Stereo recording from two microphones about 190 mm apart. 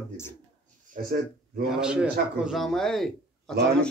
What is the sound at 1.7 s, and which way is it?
Speech, 5° right (ahead or behind).